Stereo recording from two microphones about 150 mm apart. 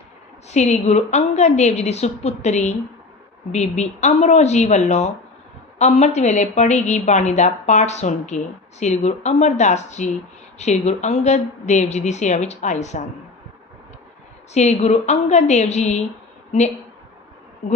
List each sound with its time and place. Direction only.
0.5 s a woman's voice: 50° left (ahead or behind)
14.5 s a woman's voice: 50° left (ahead or behind)
17.6 s bee: 50° left (ahead or behind)